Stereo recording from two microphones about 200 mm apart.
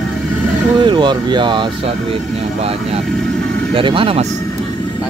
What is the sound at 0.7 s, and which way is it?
Speech, 20° right (ahead or behind).